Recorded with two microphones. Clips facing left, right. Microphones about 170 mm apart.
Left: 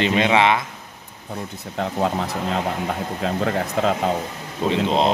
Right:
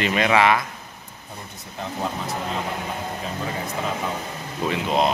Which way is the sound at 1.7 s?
75° left (ahead or behind).